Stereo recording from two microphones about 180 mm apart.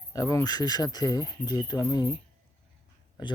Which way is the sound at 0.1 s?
20° left (ahead or behind).